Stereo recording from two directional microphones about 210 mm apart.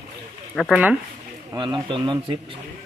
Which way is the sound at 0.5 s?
5° right (ahead or behind).